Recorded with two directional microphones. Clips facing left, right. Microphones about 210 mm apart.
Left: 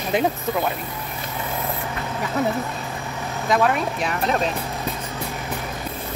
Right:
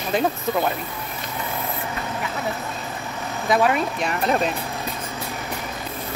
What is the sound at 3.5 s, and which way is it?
Speech, centre (ahead or behind).